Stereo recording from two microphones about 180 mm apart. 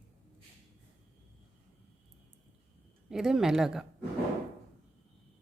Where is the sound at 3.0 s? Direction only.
5° right (ahead or behind).